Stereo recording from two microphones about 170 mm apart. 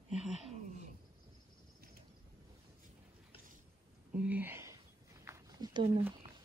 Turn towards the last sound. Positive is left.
turn(degrees=-25)  # may be behind; listen again after turning